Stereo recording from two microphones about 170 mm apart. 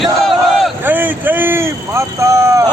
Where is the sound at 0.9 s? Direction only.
10° right (ahead or behind).